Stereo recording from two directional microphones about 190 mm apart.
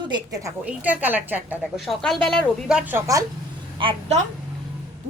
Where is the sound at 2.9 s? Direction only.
15° right (ahead or behind).